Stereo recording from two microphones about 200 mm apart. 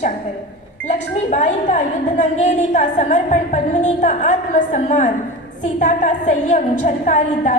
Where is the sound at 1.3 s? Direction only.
35° left (ahead or behind).